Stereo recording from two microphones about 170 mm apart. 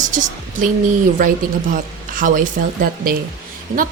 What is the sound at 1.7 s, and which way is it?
A woman's voice, 50° right (ahead or behind).